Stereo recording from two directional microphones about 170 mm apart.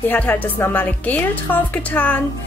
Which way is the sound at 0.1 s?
10° left (ahead or behind).